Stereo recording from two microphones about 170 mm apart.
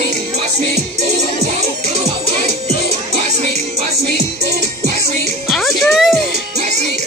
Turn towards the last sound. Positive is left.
turn(degrees=0)  # may be behind; listen again after turning